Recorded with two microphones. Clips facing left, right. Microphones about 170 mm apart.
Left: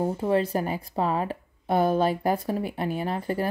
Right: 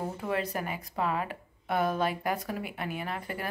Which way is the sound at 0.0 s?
30° left (ahead or behind).